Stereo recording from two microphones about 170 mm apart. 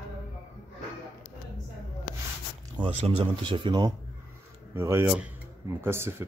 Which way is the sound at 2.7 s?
30° right (ahead or behind).